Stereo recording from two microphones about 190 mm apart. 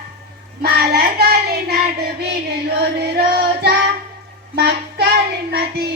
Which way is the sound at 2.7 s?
60° right (ahead or behind).